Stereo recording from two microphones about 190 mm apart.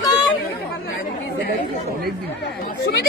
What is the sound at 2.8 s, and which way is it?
Speech, 55° left (ahead or behind).